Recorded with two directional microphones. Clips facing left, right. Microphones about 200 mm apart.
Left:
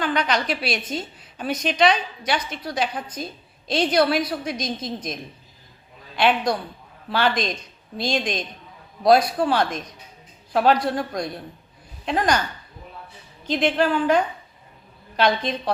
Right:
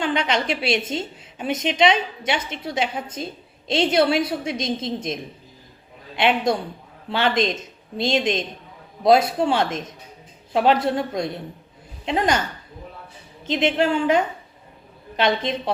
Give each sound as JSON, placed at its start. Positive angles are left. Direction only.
{"t": 0.0, "sound": "a woman's voice", "side_deg": -25}
{"t": 13.4, "sound": "a woman's voice", "side_deg": -20}